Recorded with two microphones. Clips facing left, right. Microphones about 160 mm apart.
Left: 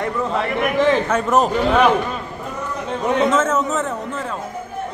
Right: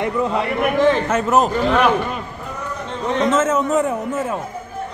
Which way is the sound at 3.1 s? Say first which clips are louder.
Left 1 dB; 5° left (ahead or behind).